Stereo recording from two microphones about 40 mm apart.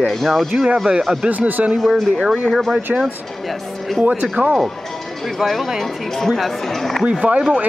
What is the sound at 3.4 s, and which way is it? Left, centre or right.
Speech, centre.